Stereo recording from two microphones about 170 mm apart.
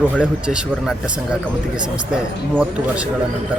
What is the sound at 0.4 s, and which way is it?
Speech, 5° right (ahead or behind).